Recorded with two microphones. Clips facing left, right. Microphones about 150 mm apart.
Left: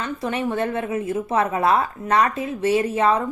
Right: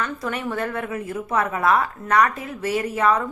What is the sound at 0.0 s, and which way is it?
Speech, 25° left (ahead or behind).